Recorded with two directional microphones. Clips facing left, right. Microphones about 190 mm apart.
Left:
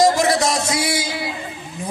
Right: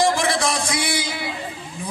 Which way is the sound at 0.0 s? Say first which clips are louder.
Left 4 dB; 40° left (ahead or behind).